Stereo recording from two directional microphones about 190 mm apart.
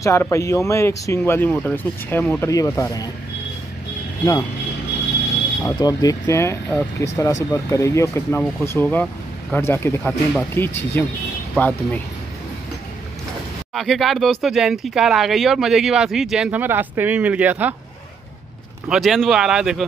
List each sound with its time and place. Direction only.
0.0 s speech: 15° left (ahead or behind)
5.6 s speech: 20° left (ahead or behind)
8.8 s speech: 5° left (ahead or behind)
13.7 s speech: centre (ahead or behind)
18.9 s speech: centre (ahead or behind)